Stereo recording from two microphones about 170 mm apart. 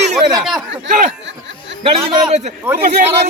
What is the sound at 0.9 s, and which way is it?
Speech, 45° right (ahead or behind).